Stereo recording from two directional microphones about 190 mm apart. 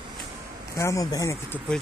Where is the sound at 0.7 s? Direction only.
15° left (ahead or behind).